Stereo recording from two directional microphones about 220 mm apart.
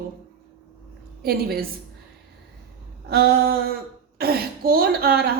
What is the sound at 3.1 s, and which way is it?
A woman's voice, 45° right (ahead or behind).